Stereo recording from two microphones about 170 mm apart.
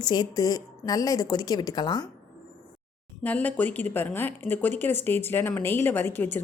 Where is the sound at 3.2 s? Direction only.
10° left (ahead or behind).